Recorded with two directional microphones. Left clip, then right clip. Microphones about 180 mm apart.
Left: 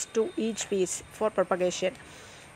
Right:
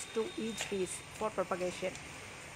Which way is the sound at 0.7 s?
30° left (ahead or behind).